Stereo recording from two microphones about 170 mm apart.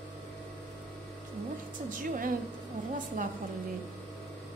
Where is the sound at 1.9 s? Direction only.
55° right (ahead or behind).